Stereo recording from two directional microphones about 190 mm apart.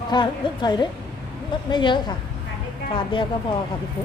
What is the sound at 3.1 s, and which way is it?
Speech, 25° left (ahead or behind).